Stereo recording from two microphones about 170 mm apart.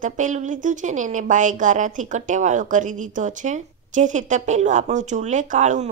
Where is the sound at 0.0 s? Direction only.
45° right (ahead or behind).